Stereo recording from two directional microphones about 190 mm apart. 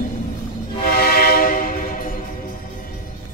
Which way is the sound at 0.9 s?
50° left (ahead or behind).